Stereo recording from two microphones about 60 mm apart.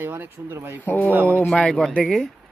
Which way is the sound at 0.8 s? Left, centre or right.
Left.